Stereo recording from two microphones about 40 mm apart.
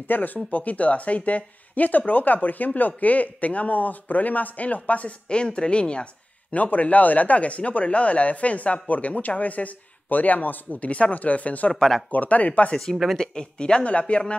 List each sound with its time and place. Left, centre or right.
0.0 s speech: left
6.5 s speech: left
11.7 s speech: centre
12.1 s speech: left
13.2 s speech: centre